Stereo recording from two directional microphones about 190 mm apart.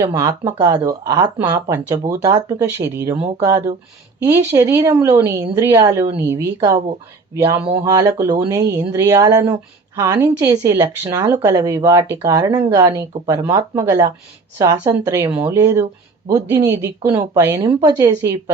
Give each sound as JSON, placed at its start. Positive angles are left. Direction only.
{"t": 0.0, "sound": "speech", "side_deg": -15}
{"t": 4.3, "sound": "speech", "side_deg": -15}
{"t": 7.9, "sound": "speech", "side_deg": -15}